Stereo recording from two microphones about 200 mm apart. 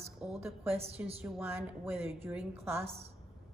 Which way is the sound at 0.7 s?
30° right (ahead or behind).